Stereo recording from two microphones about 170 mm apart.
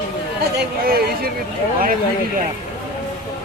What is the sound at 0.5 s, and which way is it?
Speech, 65° right (ahead or behind).